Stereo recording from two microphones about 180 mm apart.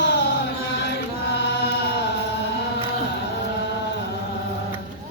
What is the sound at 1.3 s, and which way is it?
Chant, 70° left (ahead or behind).